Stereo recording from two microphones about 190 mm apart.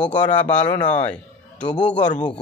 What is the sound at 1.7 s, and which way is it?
Speech, 40° left (ahead or behind).